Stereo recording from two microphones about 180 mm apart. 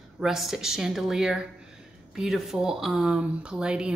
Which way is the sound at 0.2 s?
Centre (ahead or behind).